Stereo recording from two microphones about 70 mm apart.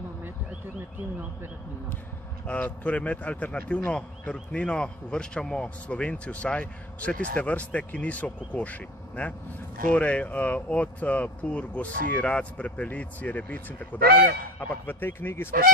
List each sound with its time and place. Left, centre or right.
2.4 s speech: centre; by 15.5 s left